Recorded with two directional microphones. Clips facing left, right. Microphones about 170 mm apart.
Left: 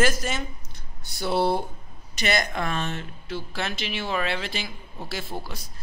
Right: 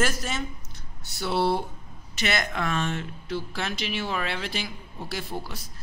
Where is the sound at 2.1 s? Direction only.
40° left (ahead or behind).